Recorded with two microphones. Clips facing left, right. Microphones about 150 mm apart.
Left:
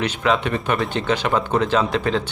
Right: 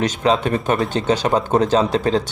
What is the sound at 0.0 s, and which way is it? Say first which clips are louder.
Speech: right 3 dB; 35° right (ahead or behind).